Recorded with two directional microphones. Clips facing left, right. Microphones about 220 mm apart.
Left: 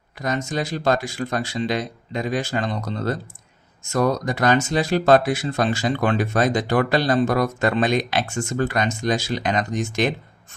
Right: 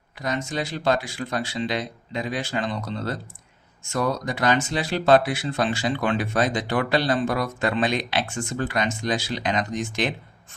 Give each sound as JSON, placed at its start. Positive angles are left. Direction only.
{"t": 0.2, "sound": "speech", "side_deg": 45}